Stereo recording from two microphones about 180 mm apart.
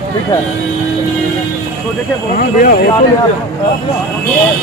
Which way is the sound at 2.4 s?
55° left (ahead or behind).